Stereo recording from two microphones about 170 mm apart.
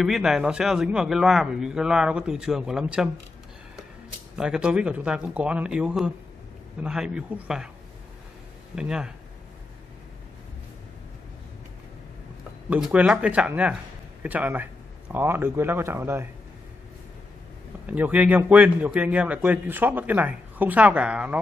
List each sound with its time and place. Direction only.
0.0 s a man's voice: 5° right (ahead or behind)
4.4 s a man's voice: 5° right (ahead or behind)
8.7 s a man's voice: 5° right (ahead or behind)
12.6 s a man's voice: 10° right (ahead or behind)
17.8 s a man's voice: 10° right (ahead or behind)